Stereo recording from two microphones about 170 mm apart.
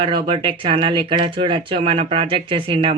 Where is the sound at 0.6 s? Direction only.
30° right (ahead or behind).